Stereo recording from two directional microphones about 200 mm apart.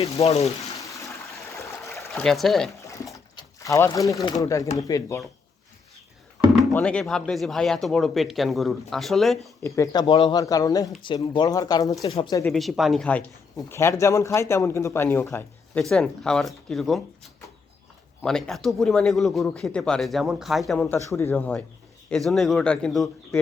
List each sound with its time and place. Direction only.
0.0 s speech: 15° left (ahead or behind)
0.8 s toilet flush: 15° left (ahead or behind)
2.0 s speech: centre (ahead or behind)
3.3 s a sound: 15° left (ahead or behind)
4.1 s speech: 15° left (ahead or behind)
6.7 s speech: 5° left (ahead or behind)
9.6 s speech: 15° left (ahead or behind)
12.0 s speech: 30° left (ahead or behind)
12.5 s speech: centre (ahead or behind)
18.2 s speech: 5° left (ahead or behind)